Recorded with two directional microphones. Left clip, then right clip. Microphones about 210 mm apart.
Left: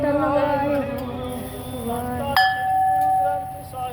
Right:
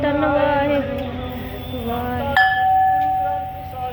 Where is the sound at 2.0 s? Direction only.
Centre (ahead or behind).